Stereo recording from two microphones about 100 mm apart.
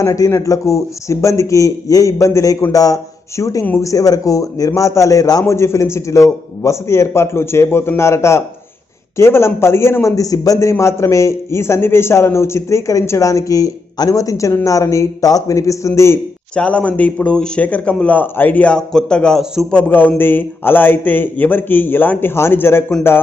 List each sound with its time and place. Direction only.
0.0 s a man's voice: 30° left (ahead or behind)
16.5 s a man's voice: 10° left (ahead or behind)